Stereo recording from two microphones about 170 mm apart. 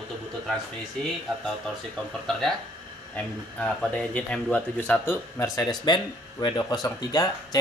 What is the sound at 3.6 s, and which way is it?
Speech, 5° left (ahead or behind).